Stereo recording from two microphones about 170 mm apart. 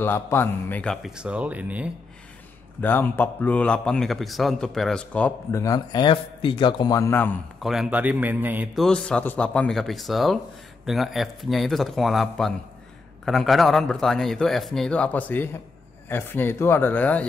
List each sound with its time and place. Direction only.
0.0 s speech: 15° left (ahead or behind)
1.0 s a man's voice: 5° right (ahead or behind)
2.8 s a man's voice: 10° left (ahead or behind)
5.6 s a man's voice: 20° left (ahead or behind)
7.6 s a man's voice: centre (ahead or behind)
8.7 s a man's voice: 5° left (ahead or behind)